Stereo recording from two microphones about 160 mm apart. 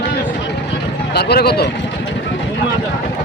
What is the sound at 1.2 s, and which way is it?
Speech, 85° left.